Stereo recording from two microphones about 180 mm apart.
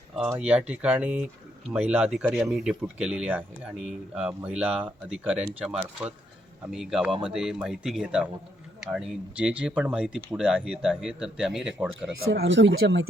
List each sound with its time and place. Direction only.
0.2 s speech: 10° right (ahead or behind)
12.3 s speech: 90° right; by 13.1 s 70° right (ahead or behind)